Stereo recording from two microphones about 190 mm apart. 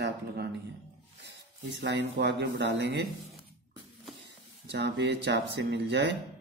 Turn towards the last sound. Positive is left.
turn(degrees=-65)  # may be behind; listen again after turning